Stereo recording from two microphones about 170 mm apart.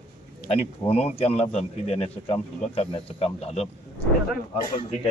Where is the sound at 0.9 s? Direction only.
35° left (ahead or behind).